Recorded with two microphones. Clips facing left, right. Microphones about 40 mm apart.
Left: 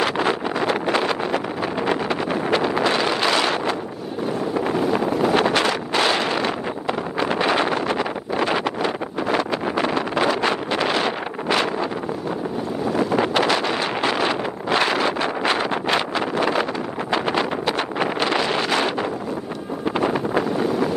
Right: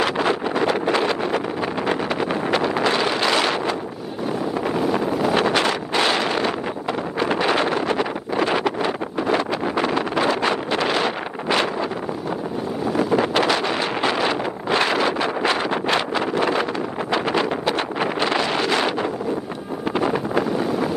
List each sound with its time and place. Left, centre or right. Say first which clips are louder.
7.9 s wind noise: right 1 dB; left
12.9 s wind noise: right 1 dB; centre
14.9 s wind noise: right 1 dB; right
17.1 s wind noise: even; left